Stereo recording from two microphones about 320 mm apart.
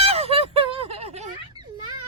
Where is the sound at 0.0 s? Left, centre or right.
Centre.